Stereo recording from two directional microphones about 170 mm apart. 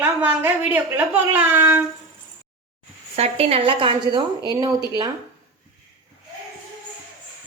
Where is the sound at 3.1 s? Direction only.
35° right (ahead or behind).